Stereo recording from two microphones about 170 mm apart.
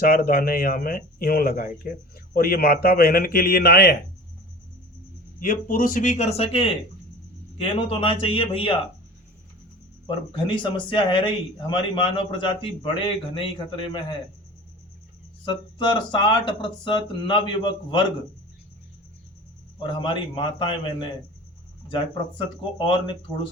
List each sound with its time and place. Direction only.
0.0 s speech: 60° left (ahead or behind)
5.4 s a man's voice: 55° left (ahead or behind); by 8.8 s 30° left (ahead or behind)
10.3 s speech: 30° left (ahead or behind)
15.4 s speech: 25° left (ahead or behind)
19.8 s speech: 30° left (ahead or behind)